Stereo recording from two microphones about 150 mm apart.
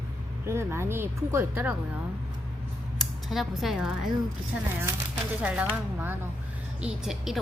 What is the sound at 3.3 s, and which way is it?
Speech, centre (ahead or behind).